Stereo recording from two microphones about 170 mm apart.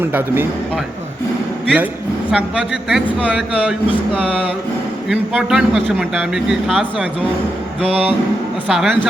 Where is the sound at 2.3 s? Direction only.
5° right (ahead or behind).